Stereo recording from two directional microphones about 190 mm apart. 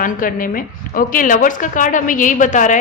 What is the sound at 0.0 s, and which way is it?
A woman's voice, 45° left (ahead or behind).